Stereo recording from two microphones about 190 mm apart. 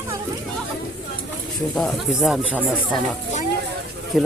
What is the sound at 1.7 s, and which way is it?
Speech, centre (ahead or behind).